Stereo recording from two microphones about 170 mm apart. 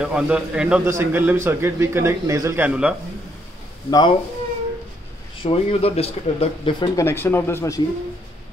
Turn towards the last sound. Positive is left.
turn(degrees=15)  # may be behind; listen again after turning